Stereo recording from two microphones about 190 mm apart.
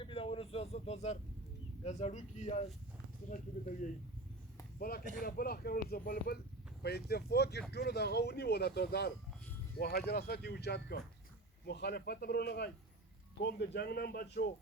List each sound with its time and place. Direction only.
0.0 s speech: 30° left (ahead or behind)
4.8 s speech: 50° left (ahead or behind)